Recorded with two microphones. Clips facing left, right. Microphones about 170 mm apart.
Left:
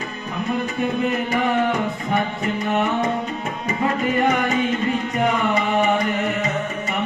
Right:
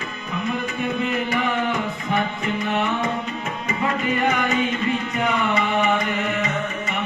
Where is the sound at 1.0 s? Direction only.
35° left (ahead or behind).